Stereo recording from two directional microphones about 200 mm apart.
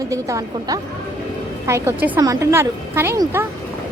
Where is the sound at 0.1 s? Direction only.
15° right (ahead or behind).